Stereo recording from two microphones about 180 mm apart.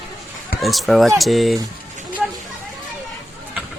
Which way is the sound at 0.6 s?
Centre (ahead or behind).